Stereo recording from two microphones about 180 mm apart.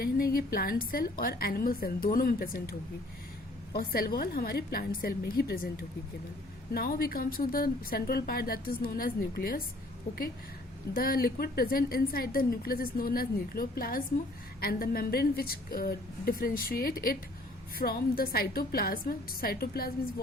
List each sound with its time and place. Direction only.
0.0 s a woman's voice: 55° left (ahead or behind)
10.9 s a woman's voice: 55° left (ahead or behind)